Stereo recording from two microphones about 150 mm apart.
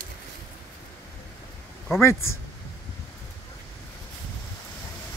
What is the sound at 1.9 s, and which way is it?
Speech, 15° left (ahead or behind).